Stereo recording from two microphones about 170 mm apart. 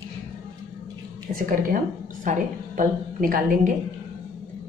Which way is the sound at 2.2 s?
50° right (ahead or behind).